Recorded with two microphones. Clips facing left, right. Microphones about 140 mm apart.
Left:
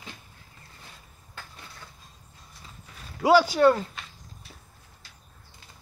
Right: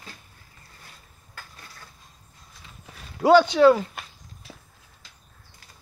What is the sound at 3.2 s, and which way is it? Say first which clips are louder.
Speech: right 3 dB; 5° left (ahead or behind).